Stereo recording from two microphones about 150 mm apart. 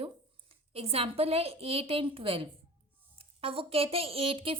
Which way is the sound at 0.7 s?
40° right (ahead or behind).